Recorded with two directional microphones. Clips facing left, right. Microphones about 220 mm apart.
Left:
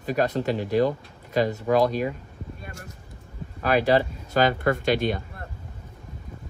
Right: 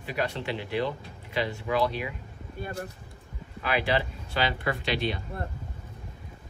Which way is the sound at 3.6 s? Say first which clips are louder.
Left 7 dB; 40° left (ahead or behind).